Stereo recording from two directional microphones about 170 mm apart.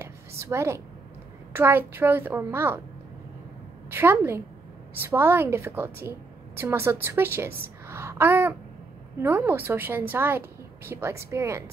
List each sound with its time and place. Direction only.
0.0 s a sound: 15° right (ahead or behind)
1.5 s a woman's voice: 15° right (ahead or behind)
3.9 s a woman's voice: 10° right (ahead or behind)